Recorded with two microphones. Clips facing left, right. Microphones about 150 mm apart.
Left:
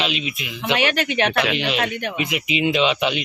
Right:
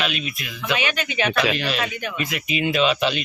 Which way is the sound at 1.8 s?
65° left (ahead or behind).